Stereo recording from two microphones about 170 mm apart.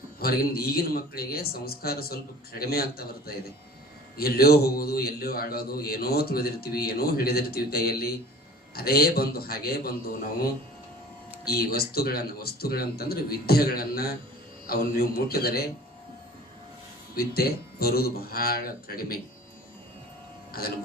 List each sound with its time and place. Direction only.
0.2 s a man's voice: 65° left (ahead or behind)
17.2 s a man's voice: 65° left (ahead or behind)
20.5 s speech: 65° left (ahead or behind)